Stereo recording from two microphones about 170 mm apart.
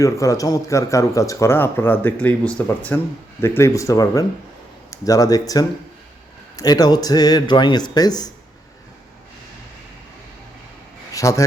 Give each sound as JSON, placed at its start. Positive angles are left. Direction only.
{"t": 0.0, "sound": "speech", "side_deg": 20}
{"t": 11.1, "sound": "speech", "side_deg": 20}